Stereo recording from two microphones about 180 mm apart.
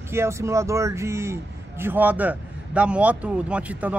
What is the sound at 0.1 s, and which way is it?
Speech, 15° right (ahead or behind).